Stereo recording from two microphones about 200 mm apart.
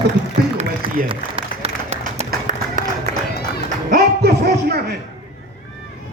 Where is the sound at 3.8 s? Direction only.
50° right (ahead or behind).